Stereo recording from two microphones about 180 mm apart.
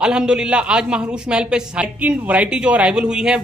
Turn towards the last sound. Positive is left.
turn(degrees=-5)  # may be behind; listen again after turning